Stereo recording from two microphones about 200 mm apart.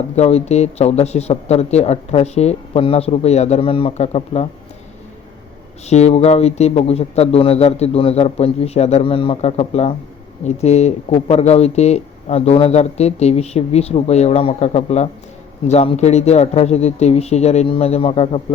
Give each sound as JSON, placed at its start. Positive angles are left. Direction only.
{"t": 0.2, "sound": "speech", "side_deg": 30}
{"t": 5.9, "sound": "speech", "side_deg": 35}